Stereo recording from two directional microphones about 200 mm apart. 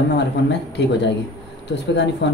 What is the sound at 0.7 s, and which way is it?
Speech, 60° left (ahead or behind).